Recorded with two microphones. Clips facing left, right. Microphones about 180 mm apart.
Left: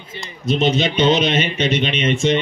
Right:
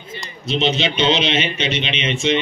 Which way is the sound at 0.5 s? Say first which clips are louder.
Left 2 dB; 50° left (ahead or behind).